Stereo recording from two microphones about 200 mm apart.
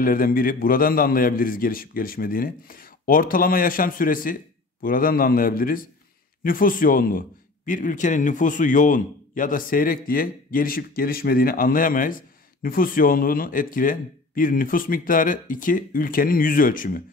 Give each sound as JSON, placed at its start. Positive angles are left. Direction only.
{"t": 0.0, "sound": "a man's voice", "side_deg": 45}